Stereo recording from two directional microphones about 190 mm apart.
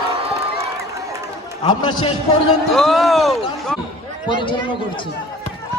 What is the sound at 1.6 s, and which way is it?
Speech, 25° left (ahead or behind).